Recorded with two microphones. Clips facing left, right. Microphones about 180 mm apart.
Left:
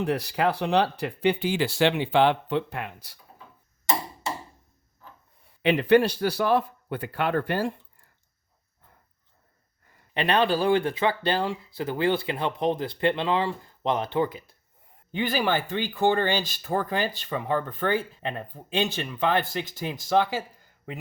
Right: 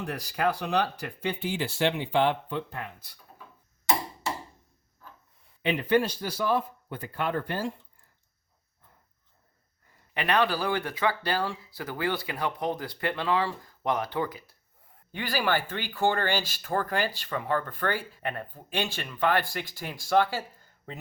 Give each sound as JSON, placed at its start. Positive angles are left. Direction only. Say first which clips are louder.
{"t": 0.0, "sound": "speech", "louder": "left 4 dB", "side_deg": 65}
{"t": 5.6, "sound": "speech", "louder": "left 5 dB", "side_deg": 70}
{"t": 10.2, "sound": "speech", "louder": "left 3 dB", "side_deg": 30}